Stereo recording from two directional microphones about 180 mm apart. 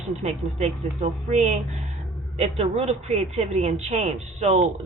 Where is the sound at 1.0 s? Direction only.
40° right (ahead or behind).